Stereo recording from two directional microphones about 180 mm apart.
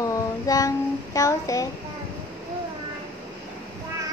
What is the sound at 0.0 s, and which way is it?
Child singing, 20° left (ahead or behind).